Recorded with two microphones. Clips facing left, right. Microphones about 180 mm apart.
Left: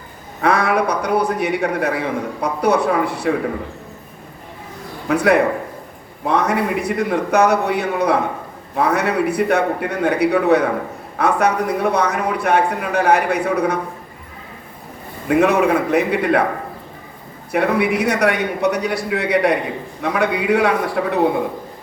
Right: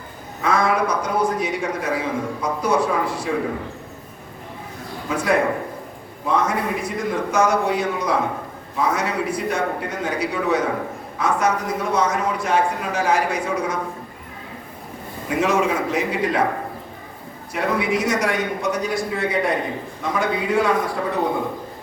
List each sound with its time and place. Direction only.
0.4 s a man's voice: 65° left (ahead or behind)
5.0 s a man's voice: 65° left (ahead or behind)
15.3 s a man's voice: 60° left (ahead or behind)
17.5 s a man's voice: 60° left (ahead or behind)